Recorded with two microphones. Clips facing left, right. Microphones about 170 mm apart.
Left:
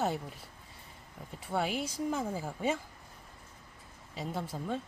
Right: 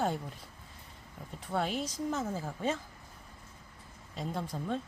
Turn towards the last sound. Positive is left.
turn(degrees=5)  # may be behind; listen again after turning